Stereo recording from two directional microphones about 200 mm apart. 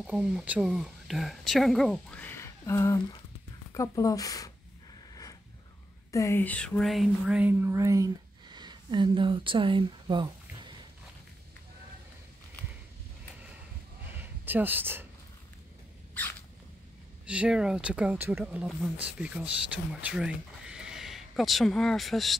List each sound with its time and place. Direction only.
0.0 s speech: 5° right (ahead or behind); by 4.5 s 15° left (ahead or behind)
6.1 s speech: 15° left (ahead or behind); by 10.8 s 25° right (ahead or behind)
14.1 s a sound: 10° right (ahead or behind)
17.3 s speech: 5° right (ahead or behind)